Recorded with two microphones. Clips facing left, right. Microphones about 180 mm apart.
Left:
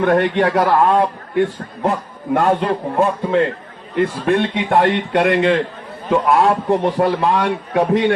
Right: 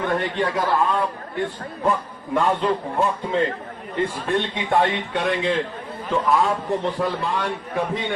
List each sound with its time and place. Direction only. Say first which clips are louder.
0.0 s a man's voice: left 8 dB; 70° left (ahead or behind)
0.9 s a man's voice: left 8 dB; 50° left (ahead or behind)
1.8 s a man's voice: left 3 dB; 70° left (ahead or behind)